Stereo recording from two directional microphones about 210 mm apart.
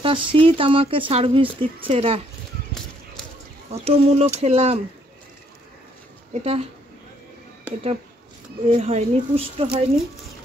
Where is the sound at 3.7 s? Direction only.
30° right (ahead or behind).